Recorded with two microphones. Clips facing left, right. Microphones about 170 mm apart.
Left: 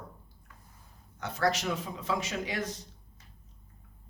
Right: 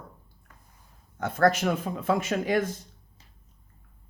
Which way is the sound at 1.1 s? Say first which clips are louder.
Right 7 dB; 50° right (ahead or behind).